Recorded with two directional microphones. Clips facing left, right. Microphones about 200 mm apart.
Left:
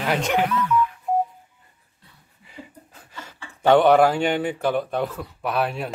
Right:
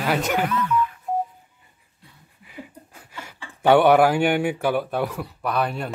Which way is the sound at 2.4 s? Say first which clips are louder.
Right 2 dB; 10° right (ahead or behind).